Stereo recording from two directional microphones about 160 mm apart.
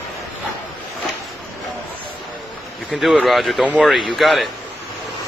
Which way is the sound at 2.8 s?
Centre (ahead or behind).